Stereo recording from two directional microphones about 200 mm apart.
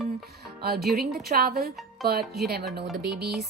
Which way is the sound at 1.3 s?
50° right (ahead or behind).